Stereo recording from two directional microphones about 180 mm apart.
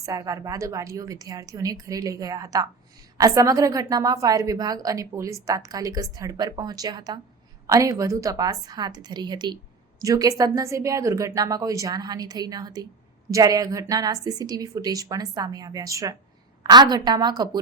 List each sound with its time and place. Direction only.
0.0 s a woman's voice: 20° right (ahead or behind)